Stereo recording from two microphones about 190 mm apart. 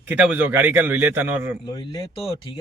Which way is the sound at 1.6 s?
25° left (ahead or behind).